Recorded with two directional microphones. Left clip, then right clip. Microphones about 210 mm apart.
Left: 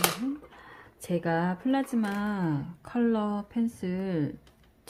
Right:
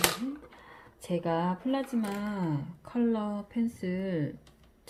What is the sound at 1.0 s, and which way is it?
Speech, 30° left (ahead or behind).